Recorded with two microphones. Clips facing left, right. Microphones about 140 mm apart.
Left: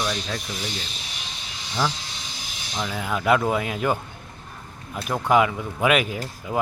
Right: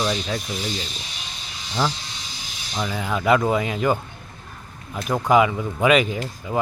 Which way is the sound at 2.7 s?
Centre (ahead or behind).